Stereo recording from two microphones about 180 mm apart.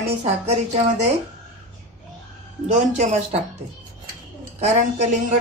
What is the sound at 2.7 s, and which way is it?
Speech, 40° right (ahead or behind).